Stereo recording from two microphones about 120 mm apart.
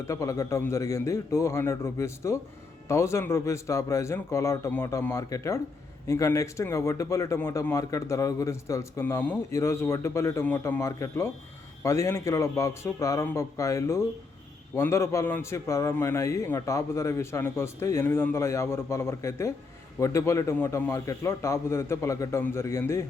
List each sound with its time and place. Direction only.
0.0 s a man's voice: 25° left (ahead or behind)